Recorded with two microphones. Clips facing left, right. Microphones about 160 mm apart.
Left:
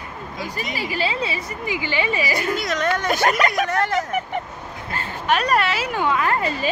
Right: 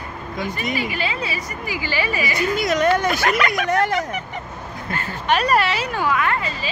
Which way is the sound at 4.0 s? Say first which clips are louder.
Left 2 dB; 50° left (ahead or behind).